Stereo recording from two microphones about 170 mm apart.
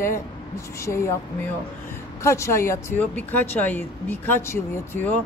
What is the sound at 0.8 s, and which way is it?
Speech, 15° left (ahead or behind).